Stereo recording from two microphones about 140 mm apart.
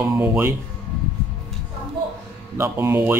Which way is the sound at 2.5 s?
20° right (ahead or behind).